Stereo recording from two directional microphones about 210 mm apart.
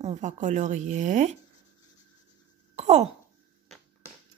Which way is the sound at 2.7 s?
30° right (ahead or behind).